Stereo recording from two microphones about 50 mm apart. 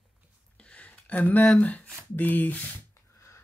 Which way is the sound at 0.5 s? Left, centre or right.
Left.